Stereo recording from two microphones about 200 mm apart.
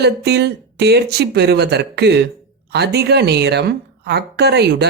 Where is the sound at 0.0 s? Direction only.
55° right (ahead or behind).